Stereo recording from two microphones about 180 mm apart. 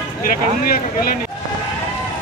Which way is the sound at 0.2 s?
50° left (ahead or behind).